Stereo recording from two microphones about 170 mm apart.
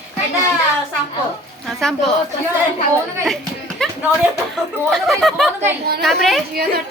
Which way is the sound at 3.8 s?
5° left (ahead or behind).